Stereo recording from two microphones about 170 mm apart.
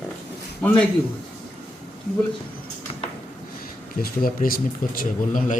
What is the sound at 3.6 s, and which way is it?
Speech, 60° left (ahead or behind).